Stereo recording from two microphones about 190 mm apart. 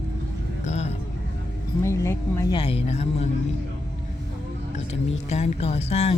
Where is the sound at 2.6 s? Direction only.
35° left (ahead or behind).